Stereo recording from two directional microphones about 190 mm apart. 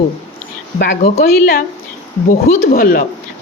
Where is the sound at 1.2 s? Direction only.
50° left (ahead or behind).